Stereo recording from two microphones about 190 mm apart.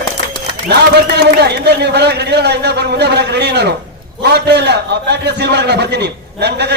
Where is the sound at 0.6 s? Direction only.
60° right (ahead or behind).